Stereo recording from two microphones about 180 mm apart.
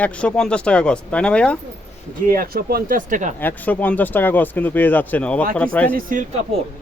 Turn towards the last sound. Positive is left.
turn(degrees=-50)  # may be behind; listen again after turning